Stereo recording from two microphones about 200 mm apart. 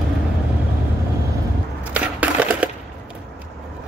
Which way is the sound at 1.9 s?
5° right (ahead or behind).